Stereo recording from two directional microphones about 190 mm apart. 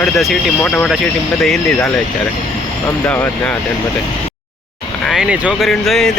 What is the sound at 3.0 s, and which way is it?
Speech, 10° left (ahead or behind).